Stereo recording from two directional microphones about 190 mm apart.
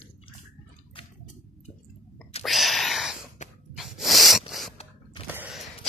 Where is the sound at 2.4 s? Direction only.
Centre (ahead or behind).